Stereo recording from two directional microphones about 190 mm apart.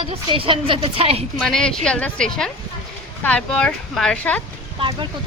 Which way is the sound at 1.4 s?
5° left (ahead or behind).